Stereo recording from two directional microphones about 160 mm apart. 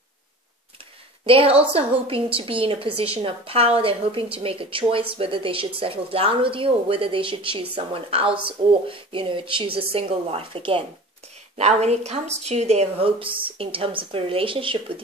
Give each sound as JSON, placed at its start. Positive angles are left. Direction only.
{"t": 1.2, "sound": "a woman's voice", "side_deg": -35}